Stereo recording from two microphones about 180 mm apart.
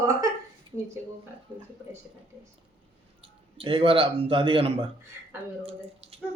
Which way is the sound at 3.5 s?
30° right (ahead or behind).